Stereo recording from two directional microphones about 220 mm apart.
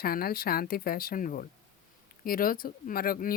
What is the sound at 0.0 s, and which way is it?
Speech, 45° left (ahead or behind).